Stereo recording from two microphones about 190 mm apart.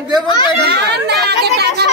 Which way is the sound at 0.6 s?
60° right (ahead or behind).